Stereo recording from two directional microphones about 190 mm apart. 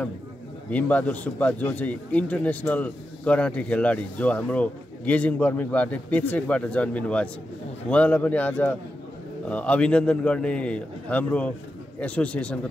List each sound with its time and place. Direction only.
0.7 s a man's voice: 10° left (ahead or behind)